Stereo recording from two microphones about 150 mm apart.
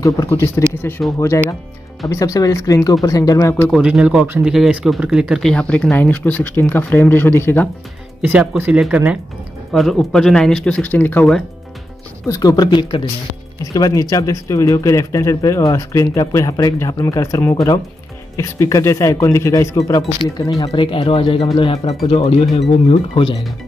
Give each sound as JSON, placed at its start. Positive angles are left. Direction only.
{"t": 0.3, "sound": "speech", "side_deg": 15}
{"t": 3.6, "sound": "speech", "side_deg": 0}
{"t": 8.2, "sound": "speech", "side_deg": -10}
{"t": 12.3, "sound": "speech", "side_deg": 25}